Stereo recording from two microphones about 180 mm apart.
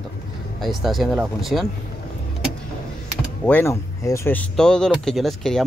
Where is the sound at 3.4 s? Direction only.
10° left (ahead or behind).